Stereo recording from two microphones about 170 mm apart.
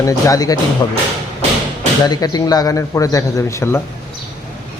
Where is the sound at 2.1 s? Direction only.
25° left (ahead or behind).